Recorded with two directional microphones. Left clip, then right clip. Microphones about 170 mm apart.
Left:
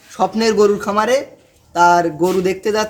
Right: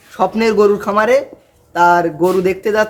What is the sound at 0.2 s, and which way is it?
A man's voice, centre (ahead or behind).